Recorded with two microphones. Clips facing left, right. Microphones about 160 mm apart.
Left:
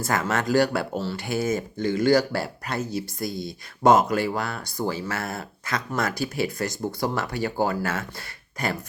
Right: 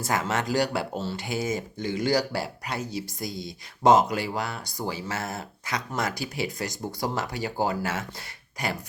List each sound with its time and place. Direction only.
0.0 s speech: 20° right (ahead or behind)